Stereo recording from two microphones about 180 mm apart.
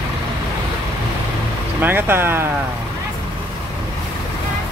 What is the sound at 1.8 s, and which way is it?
Speech, 10° right (ahead or behind).